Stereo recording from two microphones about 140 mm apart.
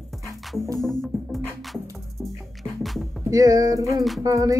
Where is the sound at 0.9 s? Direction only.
Centre (ahead or behind).